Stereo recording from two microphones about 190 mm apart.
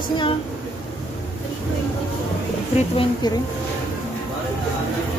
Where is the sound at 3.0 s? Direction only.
20° left (ahead or behind).